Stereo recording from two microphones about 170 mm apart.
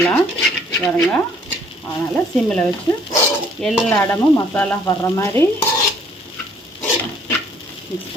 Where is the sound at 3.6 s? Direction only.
5° left (ahead or behind).